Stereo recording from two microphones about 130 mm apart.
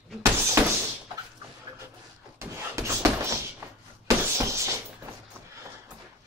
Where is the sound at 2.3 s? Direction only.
20° right (ahead or behind).